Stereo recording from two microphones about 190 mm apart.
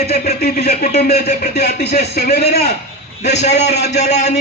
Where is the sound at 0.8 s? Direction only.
35° left (ahead or behind).